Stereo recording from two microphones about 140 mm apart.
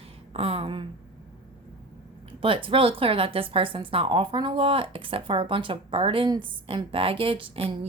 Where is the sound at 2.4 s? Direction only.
40° right (ahead or behind).